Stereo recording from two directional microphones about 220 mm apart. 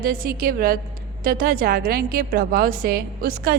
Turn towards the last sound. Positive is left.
turn(degrees=-40)  # may be behind; listen again after turning